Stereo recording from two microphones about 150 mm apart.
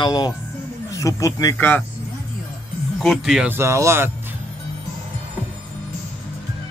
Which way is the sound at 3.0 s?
Centre (ahead or behind).